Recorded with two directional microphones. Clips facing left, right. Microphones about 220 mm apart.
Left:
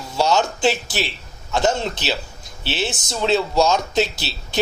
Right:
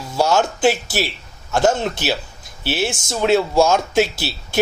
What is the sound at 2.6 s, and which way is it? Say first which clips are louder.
Speech: right 3 dB; 10° right (ahead or behind).